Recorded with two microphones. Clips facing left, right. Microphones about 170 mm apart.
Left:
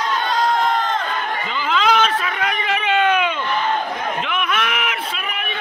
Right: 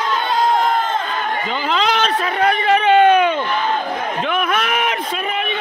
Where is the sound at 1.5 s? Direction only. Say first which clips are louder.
Left 2 dB; 40° right (ahead or behind).